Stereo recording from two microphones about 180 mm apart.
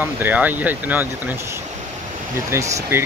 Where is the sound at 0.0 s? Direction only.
10° right (ahead or behind).